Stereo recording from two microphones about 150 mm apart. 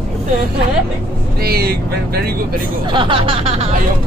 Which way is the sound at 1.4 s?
90° right.